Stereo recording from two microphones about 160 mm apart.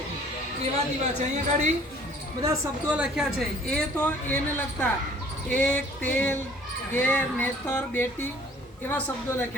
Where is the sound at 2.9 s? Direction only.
5° right (ahead or behind).